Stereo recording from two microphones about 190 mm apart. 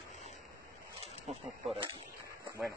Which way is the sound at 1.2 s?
Centre (ahead or behind).